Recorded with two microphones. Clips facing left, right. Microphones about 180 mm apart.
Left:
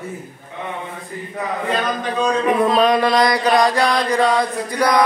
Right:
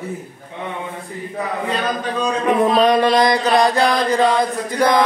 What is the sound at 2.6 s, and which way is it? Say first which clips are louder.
Chant: right 2 dB; 20° right (ahead or behind).